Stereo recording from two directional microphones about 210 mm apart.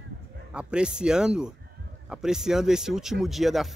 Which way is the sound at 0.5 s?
5° right (ahead or behind).